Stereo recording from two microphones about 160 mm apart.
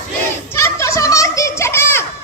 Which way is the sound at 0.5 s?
15° left (ahead or behind).